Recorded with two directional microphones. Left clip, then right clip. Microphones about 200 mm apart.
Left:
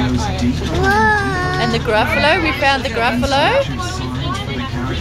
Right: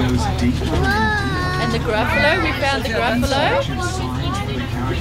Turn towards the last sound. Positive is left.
turn(degrees=25)  # may be behind; listen again after turning